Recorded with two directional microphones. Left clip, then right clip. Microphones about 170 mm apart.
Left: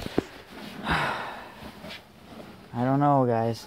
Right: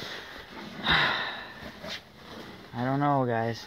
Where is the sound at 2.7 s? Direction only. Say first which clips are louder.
Left 4 dB; 30° left (ahead or behind).